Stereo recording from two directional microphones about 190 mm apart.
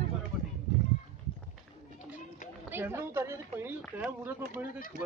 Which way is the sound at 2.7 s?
10° right (ahead or behind).